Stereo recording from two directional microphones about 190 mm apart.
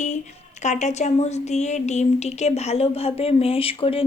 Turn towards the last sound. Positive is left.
turn(degrees=30)  # may be behind; listen again after turning